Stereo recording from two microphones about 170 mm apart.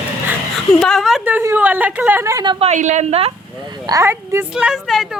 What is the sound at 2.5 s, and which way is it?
Speech, 40° right (ahead or behind).